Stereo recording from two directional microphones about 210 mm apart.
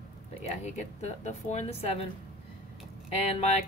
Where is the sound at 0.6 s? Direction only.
35° left (ahead or behind).